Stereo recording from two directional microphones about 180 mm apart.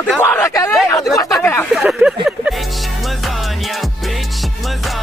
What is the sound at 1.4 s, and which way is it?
Speech, 15° left (ahead or behind).